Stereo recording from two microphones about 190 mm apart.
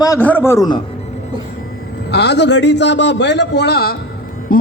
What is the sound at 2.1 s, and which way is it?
A man's voice, 60° left (ahead or behind).